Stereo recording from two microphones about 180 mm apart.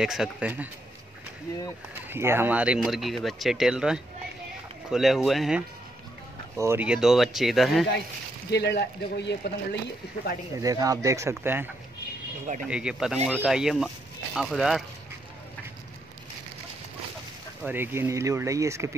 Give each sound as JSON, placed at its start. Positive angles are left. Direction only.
{"t": 0.0, "sound": "speech", "side_deg": -5}
{"t": 2.0, "sound": "speech", "side_deg": -15}
{"t": 6.5, "sound": "speech", "side_deg": -15}
{"t": 8.5, "sound": "speech", "side_deg": 70}
{"t": 10.6, "sound": "speech", "side_deg": -20}
{"t": 17.6, "sound": "speech", "side_deg": -10}